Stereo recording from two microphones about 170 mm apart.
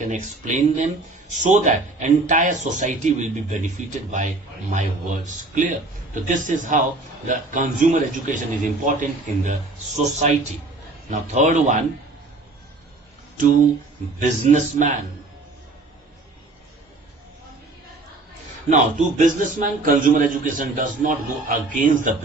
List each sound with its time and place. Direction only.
0.0 s a man's voice: 45° right (ahead or behind)
14.2 s a man's voice: 45° right (ahead or behind)
18.7 s a man's voice: 45° right (ahead or behind)